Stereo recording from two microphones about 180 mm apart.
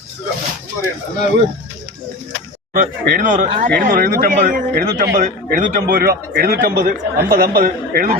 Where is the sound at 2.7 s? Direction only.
50° right (ahead or behind).